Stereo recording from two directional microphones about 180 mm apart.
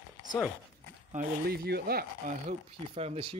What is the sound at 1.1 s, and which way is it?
Speech, 60° right (ahead or behind).